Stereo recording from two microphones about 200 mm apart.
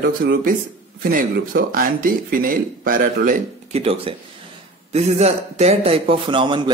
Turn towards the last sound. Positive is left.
turn(degrees=-25)  # may be behind; listen again after turning